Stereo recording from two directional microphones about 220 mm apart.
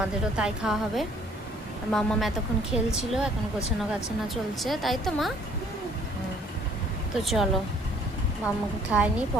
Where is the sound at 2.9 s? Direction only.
5° right (ahead or behind).